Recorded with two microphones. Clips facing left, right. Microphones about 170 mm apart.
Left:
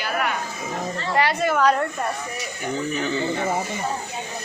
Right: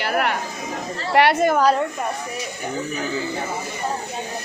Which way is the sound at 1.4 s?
40° right (ahead or behind).